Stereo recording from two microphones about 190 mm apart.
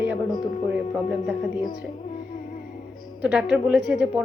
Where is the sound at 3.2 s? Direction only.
5° right (ahead or behind).